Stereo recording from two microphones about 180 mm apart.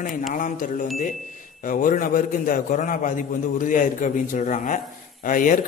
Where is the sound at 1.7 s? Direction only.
50° left (ahead or behind).